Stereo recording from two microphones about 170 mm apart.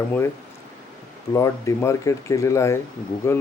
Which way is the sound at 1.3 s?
15° left (ahead or behind).